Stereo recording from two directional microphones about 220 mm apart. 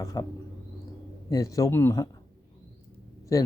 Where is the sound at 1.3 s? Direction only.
15° left (ahead or behind).